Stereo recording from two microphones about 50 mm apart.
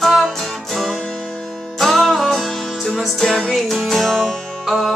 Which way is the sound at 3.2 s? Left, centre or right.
Centre.